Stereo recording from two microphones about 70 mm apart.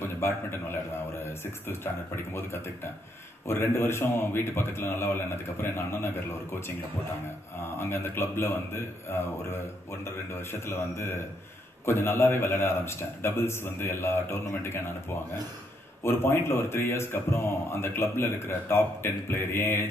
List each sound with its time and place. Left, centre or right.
0.0 s a man's voice: left
7.7 s a man's voice: left
16.0 s a man's voice: left